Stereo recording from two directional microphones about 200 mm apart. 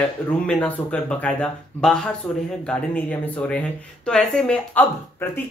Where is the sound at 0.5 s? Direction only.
5° left (ahead or behind).